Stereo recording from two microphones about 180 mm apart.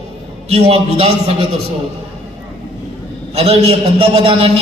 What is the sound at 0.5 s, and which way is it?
Speech, 35° right (ahead or behind).